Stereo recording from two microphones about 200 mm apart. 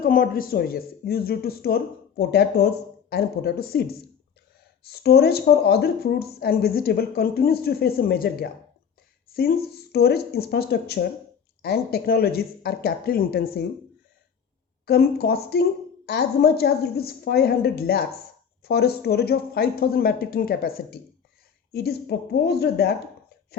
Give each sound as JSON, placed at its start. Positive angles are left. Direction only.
{"t": 0.0, "sound": "speech", "side_deg": 45}
{"t": 14.8, "sound": "speech", "side_deg": 55}